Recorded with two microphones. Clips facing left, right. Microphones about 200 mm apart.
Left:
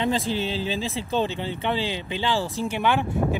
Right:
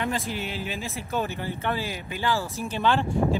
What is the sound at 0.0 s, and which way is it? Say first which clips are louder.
Speech: left 5 dB; 30° left (ahead or behind).